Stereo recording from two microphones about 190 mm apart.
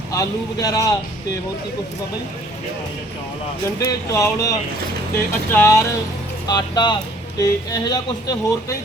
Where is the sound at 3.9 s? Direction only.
15° left (ahead or behind).